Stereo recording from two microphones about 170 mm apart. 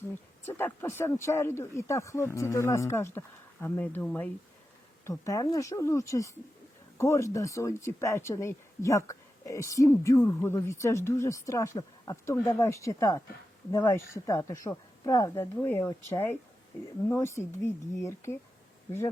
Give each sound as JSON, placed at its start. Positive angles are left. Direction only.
{"t": 0.4, "sound": "speech", "side_deg": 15}